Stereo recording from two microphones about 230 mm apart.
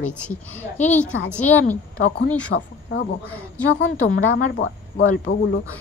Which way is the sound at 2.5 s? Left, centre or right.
Left.